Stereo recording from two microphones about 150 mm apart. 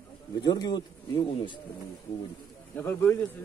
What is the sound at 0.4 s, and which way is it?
Speech, 25° left (ahead or behind).